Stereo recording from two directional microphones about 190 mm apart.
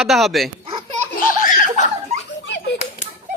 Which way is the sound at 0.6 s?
25° right (ahead or behind).